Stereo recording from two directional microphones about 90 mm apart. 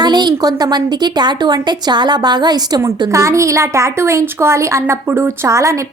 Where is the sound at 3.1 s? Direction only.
35° right (ahead or behind).